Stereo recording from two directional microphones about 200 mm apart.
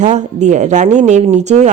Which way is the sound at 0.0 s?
35° right (ahead or behind).